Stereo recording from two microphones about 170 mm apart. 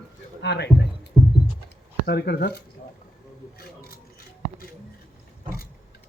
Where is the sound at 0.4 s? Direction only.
80° left.